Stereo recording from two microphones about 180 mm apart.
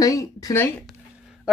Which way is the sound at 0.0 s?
20° left (ahead or behind).